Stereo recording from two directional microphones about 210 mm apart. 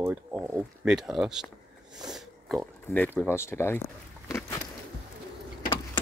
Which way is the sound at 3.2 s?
10° left (ahead or behind).